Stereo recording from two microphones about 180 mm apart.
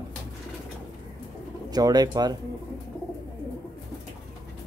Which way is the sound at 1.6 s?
20° right (ahead or behind).